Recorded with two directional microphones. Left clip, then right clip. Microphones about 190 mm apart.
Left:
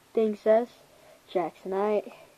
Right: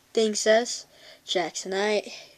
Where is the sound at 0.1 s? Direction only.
20° right (ahead or behind).